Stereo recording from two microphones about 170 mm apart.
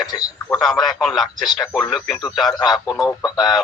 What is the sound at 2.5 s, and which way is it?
Speech, 25° left (ahead or behind).